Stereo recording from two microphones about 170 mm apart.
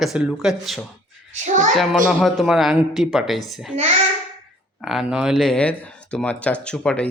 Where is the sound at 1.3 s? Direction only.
45° right (ahead or behind).